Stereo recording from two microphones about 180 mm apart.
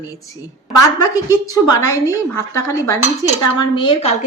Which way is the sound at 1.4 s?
20° left (ahead or behind).